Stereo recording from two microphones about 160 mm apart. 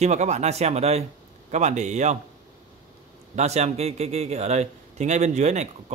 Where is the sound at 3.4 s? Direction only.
45° right (ahead or behind).